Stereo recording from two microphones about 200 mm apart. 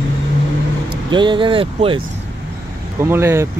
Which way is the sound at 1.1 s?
25° right (ahead or behind).